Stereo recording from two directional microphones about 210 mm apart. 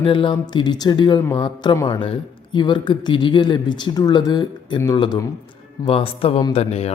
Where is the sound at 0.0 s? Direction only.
25° left (ahead or behind).